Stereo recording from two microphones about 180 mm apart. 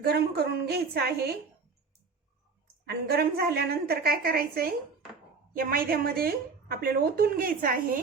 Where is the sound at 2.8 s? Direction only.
60° right (ahead or behind).